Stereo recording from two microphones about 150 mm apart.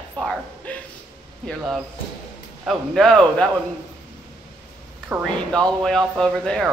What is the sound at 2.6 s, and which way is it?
Speech, centre (ahead or behind).